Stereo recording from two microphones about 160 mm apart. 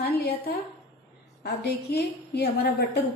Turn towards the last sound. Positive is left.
turn(degrees=85)